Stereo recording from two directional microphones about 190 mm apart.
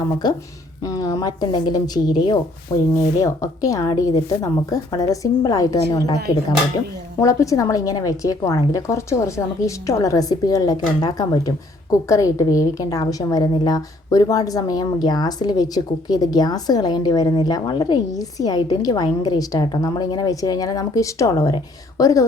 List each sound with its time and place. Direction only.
0.2 s a woman's voice: 20° left (ahead or behind)
7.2 s a woman's voice: 15° left (ahead or behind)